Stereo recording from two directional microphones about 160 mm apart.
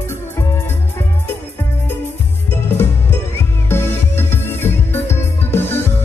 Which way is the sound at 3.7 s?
15° left (ahead or behind).